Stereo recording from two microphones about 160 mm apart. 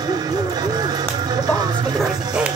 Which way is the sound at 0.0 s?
25° right (ahead or behind).